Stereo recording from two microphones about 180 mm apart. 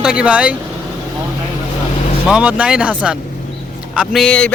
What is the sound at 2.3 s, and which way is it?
Speech, 5° right (ahead or behind).